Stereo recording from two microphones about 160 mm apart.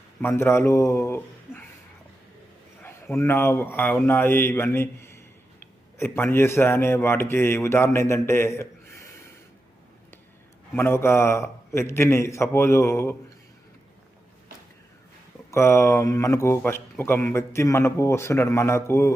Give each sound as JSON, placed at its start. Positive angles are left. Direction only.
{"t": 0.2, "sound": "a man's voice", "side_deg": 15}
{"t": 2.8, "sound": "speech", "side_deg": 15}
{"t": 10.8, "sound": "speech", "side_deg": 15}
{"t": 15.4, "sound": "speech", "side_deg": 15}